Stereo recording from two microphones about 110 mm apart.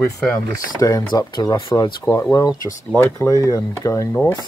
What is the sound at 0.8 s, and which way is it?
Speech, 30° left (ahead or behind).